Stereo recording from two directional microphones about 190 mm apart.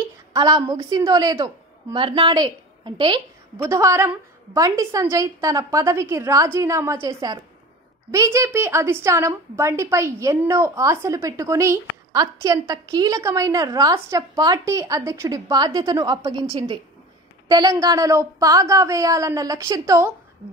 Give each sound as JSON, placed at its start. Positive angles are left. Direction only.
{"t": 0.3, "sound": "a woman's voice", "side_deg": -20}